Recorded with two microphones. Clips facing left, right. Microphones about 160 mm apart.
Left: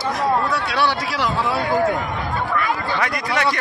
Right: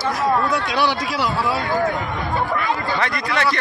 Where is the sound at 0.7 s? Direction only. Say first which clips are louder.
Right 1 dB; 10° right (ahead or behind).